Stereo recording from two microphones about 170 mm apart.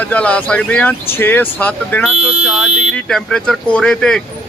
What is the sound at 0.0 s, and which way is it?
Speech, 10° left (ahead or behind).